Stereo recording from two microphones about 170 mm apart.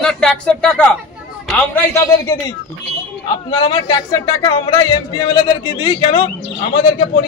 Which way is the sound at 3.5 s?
25° left (ahead or behind).